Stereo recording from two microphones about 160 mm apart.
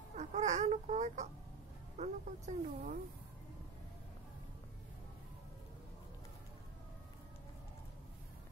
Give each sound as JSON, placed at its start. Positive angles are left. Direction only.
{"t": 0.1, "sound": "baby cry", "side_deg": -45}
{"t": 2.0, "sound": "speech", "side_deg": -45}